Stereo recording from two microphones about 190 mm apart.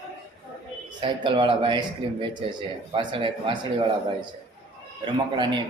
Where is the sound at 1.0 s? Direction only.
25° right (ahead or behind).